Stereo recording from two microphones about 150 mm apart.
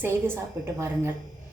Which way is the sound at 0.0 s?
15° right (ahead or behind).